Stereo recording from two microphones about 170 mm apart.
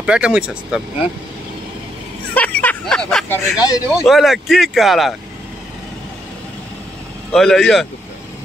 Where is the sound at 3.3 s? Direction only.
20° left (ahead or behind).